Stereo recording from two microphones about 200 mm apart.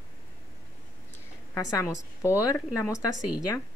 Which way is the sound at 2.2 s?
15° left (ahead or behind).